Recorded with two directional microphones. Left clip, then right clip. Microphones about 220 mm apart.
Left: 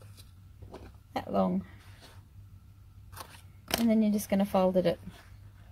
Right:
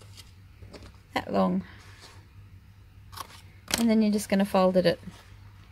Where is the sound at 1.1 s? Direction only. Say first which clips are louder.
Right 3 dB; 15° right (ahead or behind).